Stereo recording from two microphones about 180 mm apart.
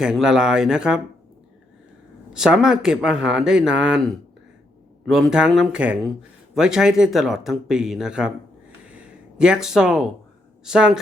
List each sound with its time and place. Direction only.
0.0 s speech: 5° right (ahead or behind)
2.3 s speech: 5° right (ahead or behind)
8.9 s a sound: 5° right (ahead or behind)
10.6 s speech: 5° right (ahead or behind)